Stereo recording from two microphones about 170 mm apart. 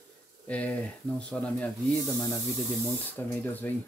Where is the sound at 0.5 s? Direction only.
10° left (ahead or behind).